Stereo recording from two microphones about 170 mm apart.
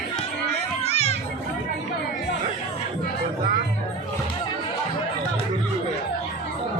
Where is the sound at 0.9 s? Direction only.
40° left (ahead or behind).